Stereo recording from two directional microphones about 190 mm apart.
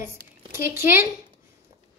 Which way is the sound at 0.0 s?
15° right (ahead or behind).